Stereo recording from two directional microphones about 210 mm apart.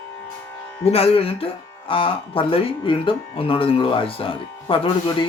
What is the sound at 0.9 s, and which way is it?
Speech, 30° left (ahead or behind).